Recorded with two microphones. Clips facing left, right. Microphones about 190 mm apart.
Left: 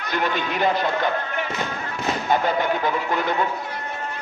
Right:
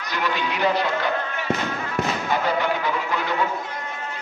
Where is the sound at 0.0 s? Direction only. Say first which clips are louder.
Left 1 dB; 50° left (ahead or behind).